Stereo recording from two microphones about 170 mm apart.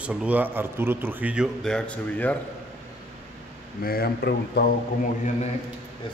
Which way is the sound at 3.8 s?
65° left (ahead or behind).